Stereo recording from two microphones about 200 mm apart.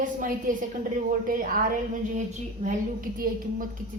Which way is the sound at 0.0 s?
40° right (ahead or behind).